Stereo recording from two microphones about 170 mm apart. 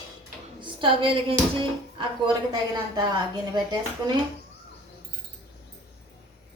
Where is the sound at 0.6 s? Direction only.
30° right (ahead or behind).